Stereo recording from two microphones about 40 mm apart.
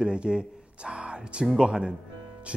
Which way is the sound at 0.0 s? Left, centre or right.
Right.